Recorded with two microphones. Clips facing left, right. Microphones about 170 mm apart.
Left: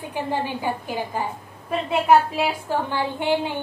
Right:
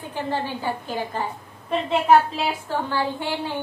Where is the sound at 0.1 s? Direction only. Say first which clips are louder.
Left 1 dB; 15° left (ahead or behind).